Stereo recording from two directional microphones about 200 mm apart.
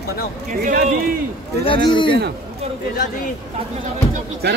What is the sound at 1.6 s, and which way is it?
Speech, 25° left (ahead or behind).